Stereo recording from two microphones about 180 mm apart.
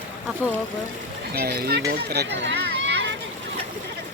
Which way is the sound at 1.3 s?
55° right (ahead or behind).